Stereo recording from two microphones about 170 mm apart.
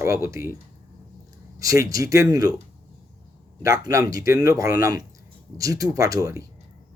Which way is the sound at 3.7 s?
20° right (ahead or behind).